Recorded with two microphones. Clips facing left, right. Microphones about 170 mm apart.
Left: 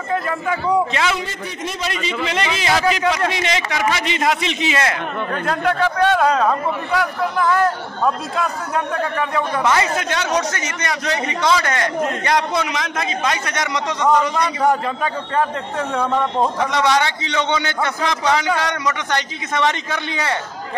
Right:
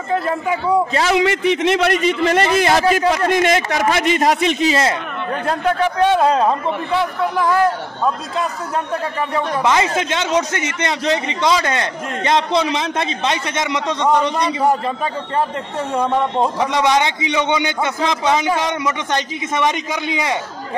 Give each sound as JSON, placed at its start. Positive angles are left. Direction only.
{"t": 1.1, "sound": "a man's voice", "side_deg": -85}
{"t": 5.5, "sound": "a man's voice", "side_deg": -20}
{"t": 6.2, "sound": "a man's voice", "side_deg": -25}
{"t": 9.6, "sound": "a man's voice", "side_deg": -15}
{"t": 14.3, "sound": "a man's voice", "side_deg": -5}
{"t": 16.5, "sound": "a man's voice", "side_deg": -15}